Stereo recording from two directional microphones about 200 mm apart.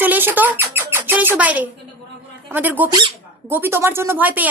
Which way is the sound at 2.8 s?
20° right (ahead or behind).